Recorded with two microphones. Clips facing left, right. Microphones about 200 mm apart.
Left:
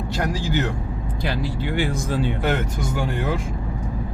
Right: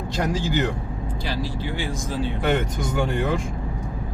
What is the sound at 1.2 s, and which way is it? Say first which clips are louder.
Speech: left 3 dB; 55° left (ahead or behind).